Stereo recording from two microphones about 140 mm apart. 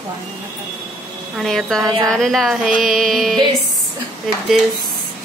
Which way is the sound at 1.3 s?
Centre (ahead or behind).